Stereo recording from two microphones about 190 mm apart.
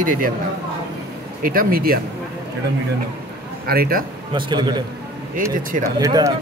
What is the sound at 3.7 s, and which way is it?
Speech, 50° right (ahead or behind).